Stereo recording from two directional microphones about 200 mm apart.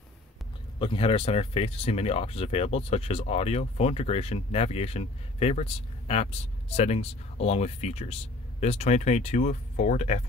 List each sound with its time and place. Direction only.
0.7 s speech: 25° left (ahead or behind)